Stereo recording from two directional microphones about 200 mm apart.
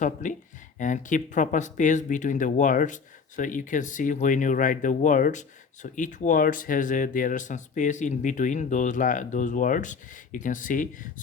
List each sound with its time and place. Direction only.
0.0 s speech: 40° left (ahead or behind)